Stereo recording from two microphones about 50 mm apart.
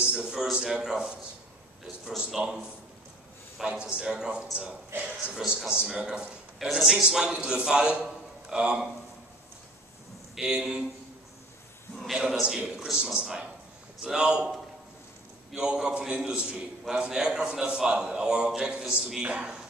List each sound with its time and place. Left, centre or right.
0.0 s a man's voice: centre
3.6 s a man's voice: centre
8.0 s music: centre
10.3 s a man's voice: centre
12.1 s a man's voice: centre
12.4 s a man's voice: centre
15.5 s a man's voice: centre